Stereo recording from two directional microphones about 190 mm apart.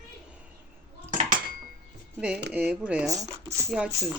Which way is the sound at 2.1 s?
5° right (ahead or behind).